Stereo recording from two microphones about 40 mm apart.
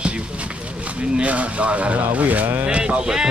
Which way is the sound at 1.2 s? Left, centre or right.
Right.